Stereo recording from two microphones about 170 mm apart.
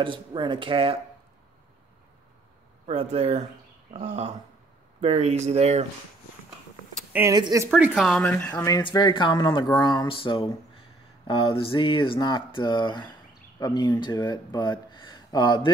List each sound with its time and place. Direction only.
0.0 s speech: 30° right (ahead or behind)
2.9 s speech: 35° right (ahead or behind)
7.1 s a sound: 15° right (ahead or behind)
7.3 s speech: 20° right (ahead or behind)
7.7 s speech: centre (ahead or behind)
8.6 s speech: 25° left (ahead or behind)